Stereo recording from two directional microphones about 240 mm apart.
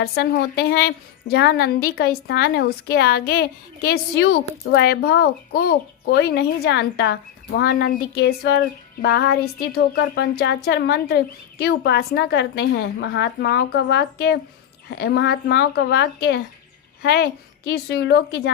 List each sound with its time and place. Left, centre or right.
0.0 s a woman's voice: left